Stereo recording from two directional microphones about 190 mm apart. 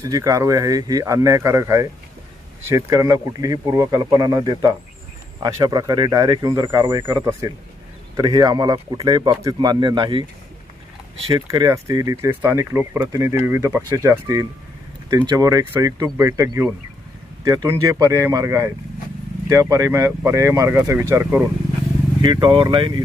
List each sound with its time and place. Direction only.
0.0 s speech: 20° right (ahead or behind)
11.3 s speech: 20° right (ahead or behind)
22.2 s speech: 25° right (ahead or behind)